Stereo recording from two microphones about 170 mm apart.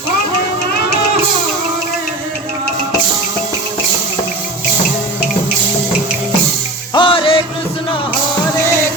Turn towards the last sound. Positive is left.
turn(degrees=30)  # may be behind; listen again after turning